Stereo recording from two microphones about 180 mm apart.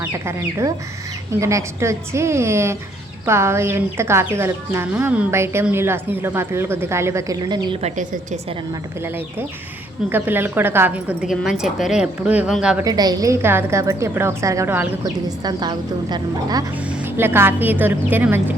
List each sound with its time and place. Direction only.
0.0 s a woman's voice: 20° right (ahead or behind)
7.8 s a woman's voice: 40° right (ahead or behind)
10.1 s a woman's voice: 10° right (ahead or behind)
12.8 s a woman's voice: 20° right (ahead or behind)